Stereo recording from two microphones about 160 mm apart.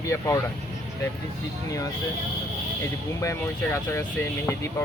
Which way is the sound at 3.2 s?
20° left (ahead or behind).